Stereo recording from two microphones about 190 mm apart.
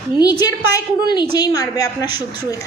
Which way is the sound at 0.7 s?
25° left (ahead or behind).